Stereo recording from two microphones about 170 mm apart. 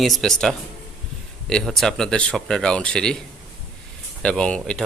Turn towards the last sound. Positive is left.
turn(degrees=5)  # may be behind; listen again after turning